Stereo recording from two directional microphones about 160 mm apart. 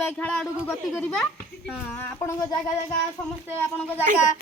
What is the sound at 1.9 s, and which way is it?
Speech, 15° left (ahead or behind).